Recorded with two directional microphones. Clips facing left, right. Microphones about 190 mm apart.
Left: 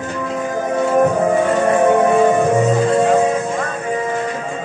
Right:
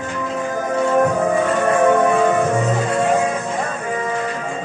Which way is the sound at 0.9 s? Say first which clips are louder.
Left 2 dB; 15° left (ahead or behind).